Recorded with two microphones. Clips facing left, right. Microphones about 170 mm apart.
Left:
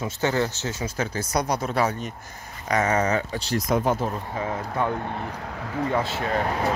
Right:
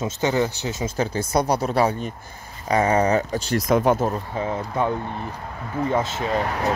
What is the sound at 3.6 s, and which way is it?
Speech, 90° right.